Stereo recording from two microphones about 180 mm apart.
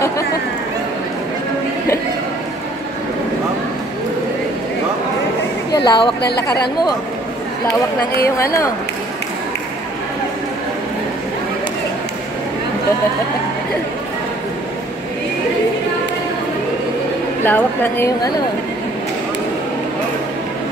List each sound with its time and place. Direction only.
5.7 s a sound: 25° left (ahead or behind)
8.2 s a woman's voice: 15° left (ahead or behind)
17.5 s a woman's voice: 10° left (ahead or behind)